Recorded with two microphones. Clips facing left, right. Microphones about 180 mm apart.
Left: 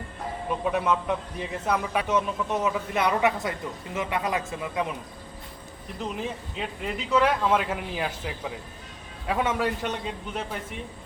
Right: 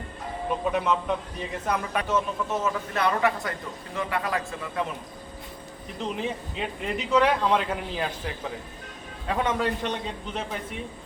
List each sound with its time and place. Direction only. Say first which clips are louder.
0.6 s a man's voice: left 1 dB; centre (ahead or behind)
2.6 s a man's voice: left 1 dB; 15° left (ahead or behind)
6.1 s a man's voice: right 2 dB; centre (ahead or behind)